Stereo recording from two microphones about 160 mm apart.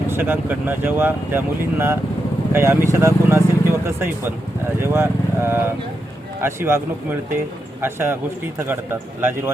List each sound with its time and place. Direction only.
0.1 s speech: 10° right (ahead or behind)